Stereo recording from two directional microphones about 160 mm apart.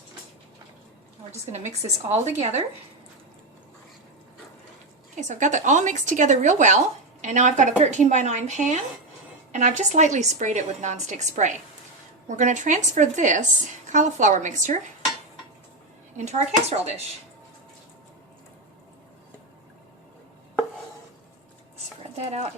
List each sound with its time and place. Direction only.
1.3 s speech: 45° right (ahead or behind)
5.3 s speech: 50° right (ahead or behind)
16.1 s speech: 45° right (ahead or behind)
22.1 s speech: 40° right (ahead or behind)